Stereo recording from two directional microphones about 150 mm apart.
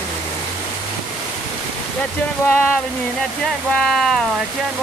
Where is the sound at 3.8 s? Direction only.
Centre (ahead or behind).